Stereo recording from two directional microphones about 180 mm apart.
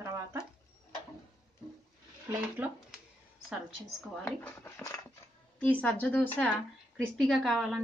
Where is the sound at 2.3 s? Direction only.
10° right (ahead or behind).